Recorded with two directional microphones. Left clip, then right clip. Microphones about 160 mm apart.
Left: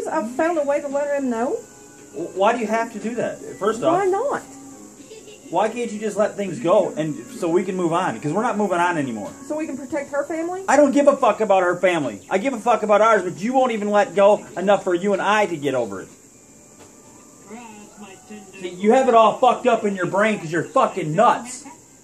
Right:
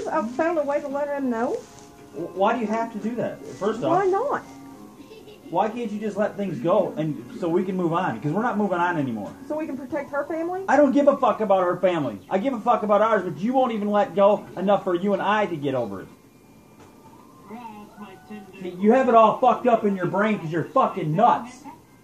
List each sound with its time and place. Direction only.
0.0 s speech: 45° left (ahead or behind)
2.3 s speech: 10° right (ahead or behind)
3.9 s speech: 40° left (ahead or behind)
5.5 s speech: 10° right (ahead or behind)
9.6 s speech: 40° left (ahead or behind)
10.6 s speech: 5° right (ahead or behind)
18.8 s speech: 10° right (ahead or behind)